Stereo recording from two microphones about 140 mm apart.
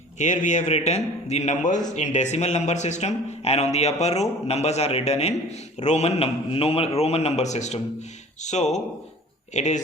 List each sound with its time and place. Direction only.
0.2 s a man's voice: 60° left (ahead or behind)